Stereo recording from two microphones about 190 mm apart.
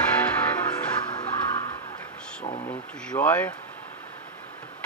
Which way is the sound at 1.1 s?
20° left (ahead or behind).